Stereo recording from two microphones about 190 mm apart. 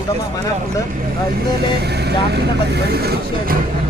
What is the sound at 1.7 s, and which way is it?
Speech, 60° right (ahead or behind).